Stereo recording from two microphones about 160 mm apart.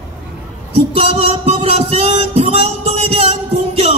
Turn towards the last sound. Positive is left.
turn(degrees=-40)  # may be behind; listen again after turning